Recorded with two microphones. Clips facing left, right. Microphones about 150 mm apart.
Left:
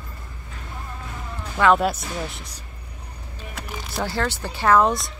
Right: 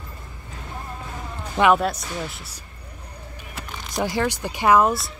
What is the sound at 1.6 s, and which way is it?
Speech, 25° right (ahead or behind).